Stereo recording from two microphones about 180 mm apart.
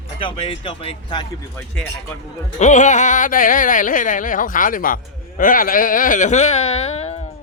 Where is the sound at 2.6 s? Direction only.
40° left (ahead or behind).